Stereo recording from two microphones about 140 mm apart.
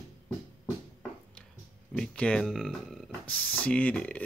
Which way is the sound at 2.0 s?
5° left (ahead or behind).